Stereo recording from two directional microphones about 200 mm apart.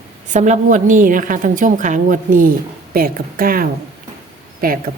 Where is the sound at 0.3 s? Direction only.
35° right (ahead or behind).